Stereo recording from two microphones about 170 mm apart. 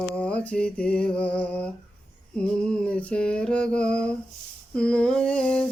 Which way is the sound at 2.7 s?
5° left (ahead or behind).